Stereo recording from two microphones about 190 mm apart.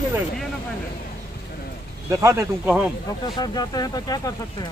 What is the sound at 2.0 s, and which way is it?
Speech, 15° right (ahead or behind).